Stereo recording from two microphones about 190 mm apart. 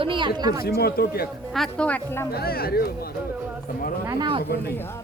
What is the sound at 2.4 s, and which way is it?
Speech, 55° left (ahead or behind).